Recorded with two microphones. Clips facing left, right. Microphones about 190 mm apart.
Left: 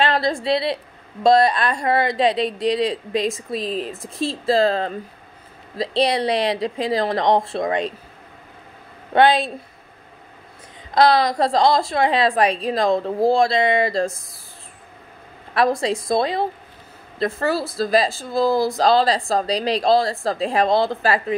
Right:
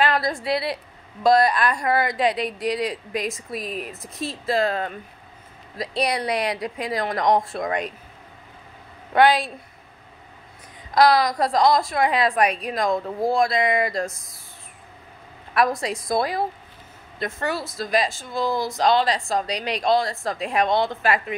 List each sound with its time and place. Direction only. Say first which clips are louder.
0.0 s a woman's voice: left 2 dB; 25° left (ahead or behind)
9.1 s a woman's voice: left 2 dB; 25° left (ahead or behind)
11.0 s a woman's voice: left 2 dB; 25° left (ahead or behind)
15.5 s a woman's voice: left 3 dB; 25° left (ahead or behind)